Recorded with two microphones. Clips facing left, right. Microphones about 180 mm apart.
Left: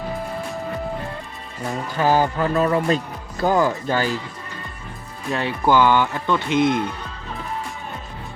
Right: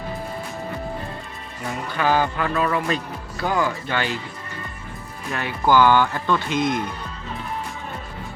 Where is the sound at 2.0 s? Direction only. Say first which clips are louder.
Left 2 dB; 40° left (ahead or behind).